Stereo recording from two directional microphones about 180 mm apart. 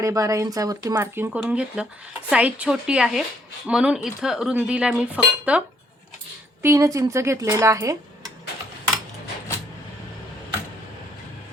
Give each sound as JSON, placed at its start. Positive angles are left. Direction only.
{"t": 0.0, "sound": "speech", "side_deg": -20}
{"t": 1.4, "sound": "a sound", "side_deg": -5}
{"t": 6.6, "sound": "speech", "side_deg": -15}